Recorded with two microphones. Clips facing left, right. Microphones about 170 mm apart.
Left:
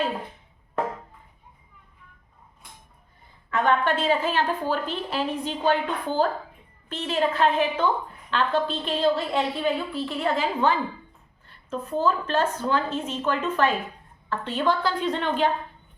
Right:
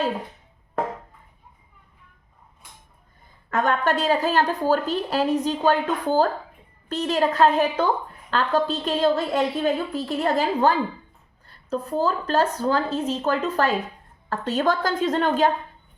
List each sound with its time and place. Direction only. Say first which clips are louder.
3.5 s a woman's voice: right 1 dB; 45° right (ahead or behind)